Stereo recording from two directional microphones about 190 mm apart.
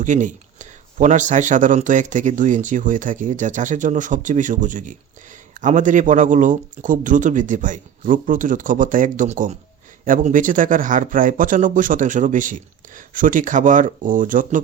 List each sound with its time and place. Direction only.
0.0 s speech: 40° right (ahead or behind)